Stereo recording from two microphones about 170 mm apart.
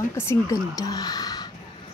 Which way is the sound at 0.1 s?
20° left (ahead or behind).